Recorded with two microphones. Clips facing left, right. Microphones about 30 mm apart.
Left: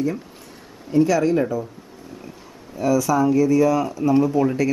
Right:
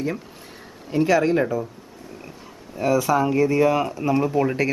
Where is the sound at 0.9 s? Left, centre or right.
Right.